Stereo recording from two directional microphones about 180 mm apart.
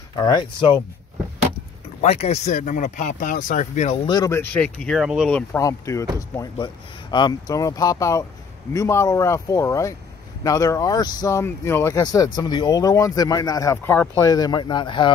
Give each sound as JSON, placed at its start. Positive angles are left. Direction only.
{"t": 0.1, "sound": "speech", "side_deg": 20}
{"t": 2.0, "sound": "speech", "side_deg": 35}
{"t": 4.1, "sound": "speech", "side_deg": 20}
{"t": 4.5, "sound": "speech", "side_deg": 5}
{"t": 5.3, "sound": "speech", "side_deg": 15}